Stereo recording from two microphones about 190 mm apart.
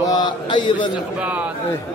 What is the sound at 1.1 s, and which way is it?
Speech, 5° right (ahead or behind).